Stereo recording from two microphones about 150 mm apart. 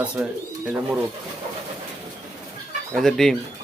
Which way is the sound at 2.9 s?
Centre (ahead or behind).